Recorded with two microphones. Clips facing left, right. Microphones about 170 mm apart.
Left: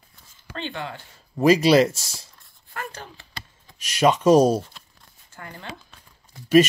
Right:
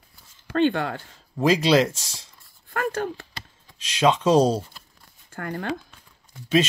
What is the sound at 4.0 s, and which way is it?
Speech, 10° left (ahead or behind).